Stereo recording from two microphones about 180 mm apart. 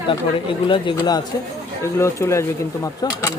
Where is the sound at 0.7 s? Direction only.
25° left (ahead or behind).